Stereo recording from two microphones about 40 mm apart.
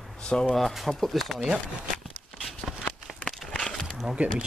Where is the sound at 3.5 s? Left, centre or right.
Centre.